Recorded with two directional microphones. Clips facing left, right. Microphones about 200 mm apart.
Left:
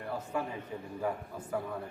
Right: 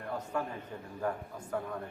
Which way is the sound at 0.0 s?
5° left (ahead or behind).